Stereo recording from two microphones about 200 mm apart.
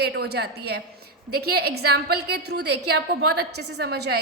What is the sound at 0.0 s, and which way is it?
A woman's voice, 55° right (ahead or behind).